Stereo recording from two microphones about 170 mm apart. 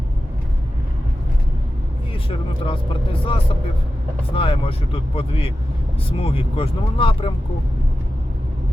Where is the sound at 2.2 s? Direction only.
30° left (ahead or behind).